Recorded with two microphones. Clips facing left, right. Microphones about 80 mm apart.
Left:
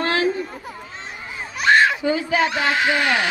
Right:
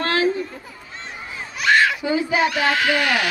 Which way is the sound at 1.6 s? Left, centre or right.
Left.